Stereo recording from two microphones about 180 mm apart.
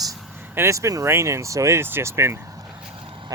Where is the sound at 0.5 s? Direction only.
15° right (ahead or behind).